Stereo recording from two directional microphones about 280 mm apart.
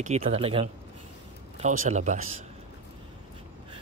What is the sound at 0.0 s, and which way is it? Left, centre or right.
Speech, right.